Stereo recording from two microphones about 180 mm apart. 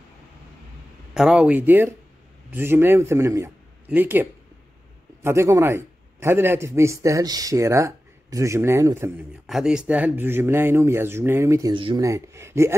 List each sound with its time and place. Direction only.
1.1 s a man's voice: 5° right (ahead or behind)
9.5 s a man's voice: 5° right (ahead or behind)
11.7 s a man's voice: 25° right (ahead or behind)